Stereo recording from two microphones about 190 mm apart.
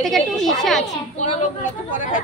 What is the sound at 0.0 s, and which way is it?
Speech, centre (ahead or behind).